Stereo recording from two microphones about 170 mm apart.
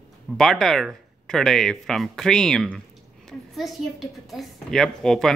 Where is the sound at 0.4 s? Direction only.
5° left (ahead or behind).